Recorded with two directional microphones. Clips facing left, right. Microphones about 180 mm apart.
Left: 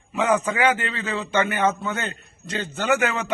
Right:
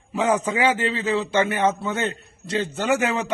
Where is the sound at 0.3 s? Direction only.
25° right (ahead or behind).